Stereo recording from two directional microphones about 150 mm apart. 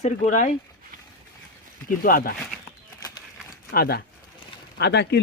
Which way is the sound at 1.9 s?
65° left (ahead or behind).